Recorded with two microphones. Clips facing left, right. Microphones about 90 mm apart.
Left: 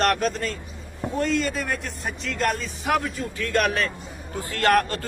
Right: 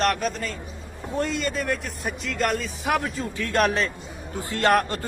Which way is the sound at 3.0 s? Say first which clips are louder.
Even; 35° right (ahead or behind).